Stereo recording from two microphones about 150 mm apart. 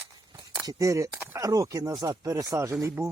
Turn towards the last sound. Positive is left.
turn(degrees=-20)  # may be behind; listen again after turning